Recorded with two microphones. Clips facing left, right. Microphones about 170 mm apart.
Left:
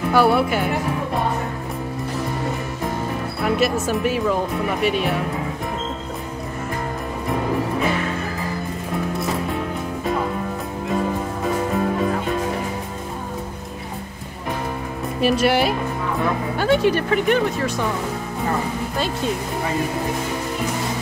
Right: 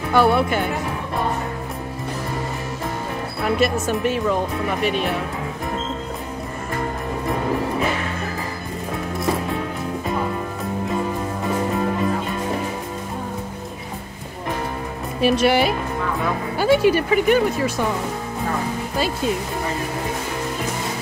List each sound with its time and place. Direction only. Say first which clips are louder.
0.1 s speech: even; 5° left (ahead or behind)
3.4 s speech: even; 5° left (ahead or behind)
15.1 s speech: right 1 dB; centre (ahead or behind)